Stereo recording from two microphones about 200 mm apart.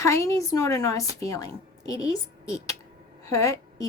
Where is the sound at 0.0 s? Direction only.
15° left (ahead or behind).